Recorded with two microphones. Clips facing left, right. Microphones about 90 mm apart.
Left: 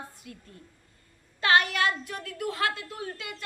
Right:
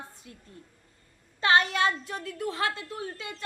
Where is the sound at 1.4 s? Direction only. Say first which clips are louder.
Even; 25° right (ahead or behind).